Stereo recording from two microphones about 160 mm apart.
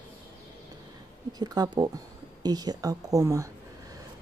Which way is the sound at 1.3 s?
25° right (ahead or behind).